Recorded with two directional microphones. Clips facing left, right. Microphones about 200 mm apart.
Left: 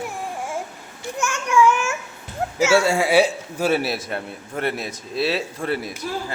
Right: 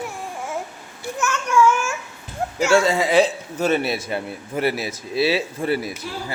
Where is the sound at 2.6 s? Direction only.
10° left (ahead or behind).